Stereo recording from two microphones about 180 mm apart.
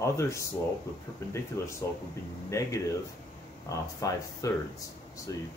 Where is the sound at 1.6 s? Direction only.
15° left (ahead or behind).